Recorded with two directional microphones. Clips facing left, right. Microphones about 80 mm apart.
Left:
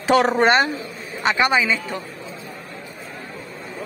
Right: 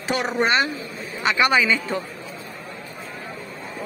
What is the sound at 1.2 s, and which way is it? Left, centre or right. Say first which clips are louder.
Speech: left 1 dB; left.